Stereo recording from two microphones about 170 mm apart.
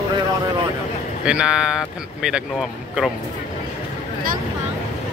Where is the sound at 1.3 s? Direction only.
5° right (ahead or behind).